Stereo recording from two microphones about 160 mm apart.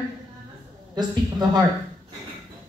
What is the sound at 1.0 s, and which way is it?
Speech, 25° right (ahead or behind).